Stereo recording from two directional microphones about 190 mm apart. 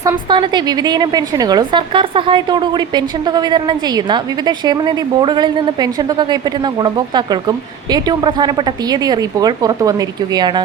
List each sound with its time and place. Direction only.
0.0 s a woman's voice: 20° right (ahead or behind)